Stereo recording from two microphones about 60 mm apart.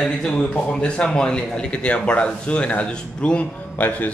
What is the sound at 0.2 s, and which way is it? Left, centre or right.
A man's voice, centre.